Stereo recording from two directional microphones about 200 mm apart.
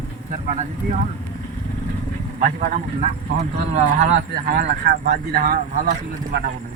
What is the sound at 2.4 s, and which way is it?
A man's voice, 40° right (ahead or behind).